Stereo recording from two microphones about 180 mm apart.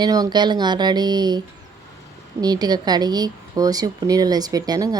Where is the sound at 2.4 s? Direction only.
20° right (ahead or behind).